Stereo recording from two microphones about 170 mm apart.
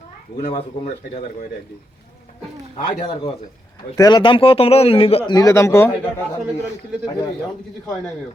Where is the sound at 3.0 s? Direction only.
30° left (ahead or behind).